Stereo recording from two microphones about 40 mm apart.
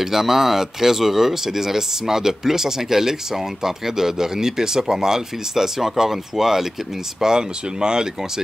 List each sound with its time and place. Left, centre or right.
0.0 s speech: centre